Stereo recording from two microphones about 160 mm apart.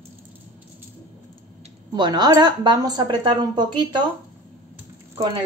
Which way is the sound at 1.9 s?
25° right (ahead or behind).